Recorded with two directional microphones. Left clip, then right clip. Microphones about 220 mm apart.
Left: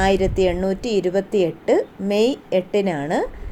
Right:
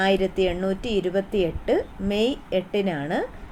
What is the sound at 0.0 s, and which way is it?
A woman's voice, 15° left (ahead or behind).